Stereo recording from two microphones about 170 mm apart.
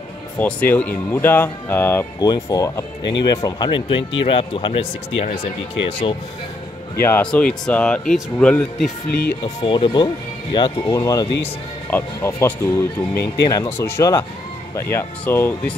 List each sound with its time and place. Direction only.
0.4 s speech: 10° left (ahead or behind); by 4.8 s 30° left (ahead or behind)
5.9 s speech: 30° left (ahead or behind)
7.0 s speech: 10° left (ahead or behind)
9.4 s speech: 30° left (ahead or behind); by 15.7 s 10° left (ahead or behind)